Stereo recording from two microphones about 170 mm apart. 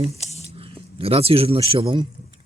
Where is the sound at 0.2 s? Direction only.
40° left (ahead or behind).